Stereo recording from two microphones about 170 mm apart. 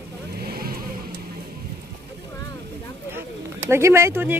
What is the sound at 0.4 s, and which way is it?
Vehicle, 65° right (ahead or behind).